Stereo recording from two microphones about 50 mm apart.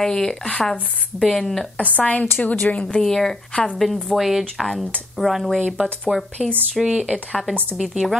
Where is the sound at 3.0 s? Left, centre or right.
Centre.